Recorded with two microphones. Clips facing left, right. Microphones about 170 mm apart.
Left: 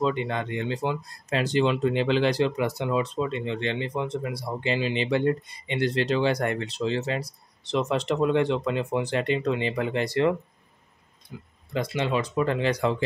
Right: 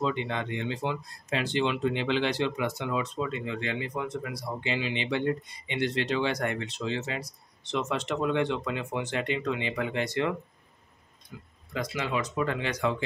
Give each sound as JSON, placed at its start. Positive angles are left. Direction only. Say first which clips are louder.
{"t": 0.0, "sound": "speech", "louder": "left 4 dB", "side_deg": 40}